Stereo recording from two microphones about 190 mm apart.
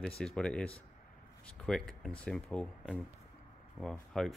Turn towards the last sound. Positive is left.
turn(degrees=5)  # may be behind; listen again after turning